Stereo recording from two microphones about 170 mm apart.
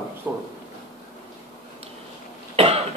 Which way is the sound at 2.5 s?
35° right (ahead or behind).